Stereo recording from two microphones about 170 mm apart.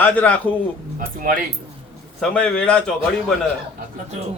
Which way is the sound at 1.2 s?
55° right (ahead or behind).